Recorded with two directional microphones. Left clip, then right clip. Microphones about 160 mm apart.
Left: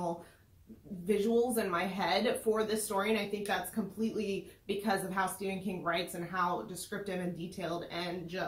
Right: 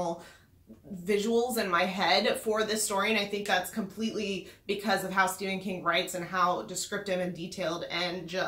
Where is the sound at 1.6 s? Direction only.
20° right (ahead or behind).